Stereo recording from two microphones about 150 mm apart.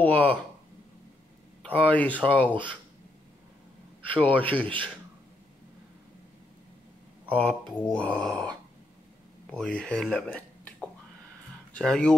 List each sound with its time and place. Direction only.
0.0 s speech: 10° left (ahead or behind)
1.6 s speech: 10° left (ahead or behind)
4.1 s speech: 10° left (ahead or behind)
7.2 s speech: 10° left (ahead or behind)